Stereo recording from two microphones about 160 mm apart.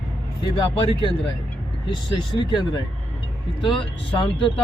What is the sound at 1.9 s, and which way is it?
Speech, 30° left (ahead or behind).